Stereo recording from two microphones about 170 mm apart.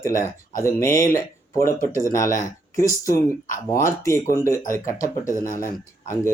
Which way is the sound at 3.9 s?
15° left (ahead or behind).